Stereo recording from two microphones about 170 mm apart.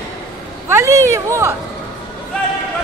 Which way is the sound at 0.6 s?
15° right (ahead or behind).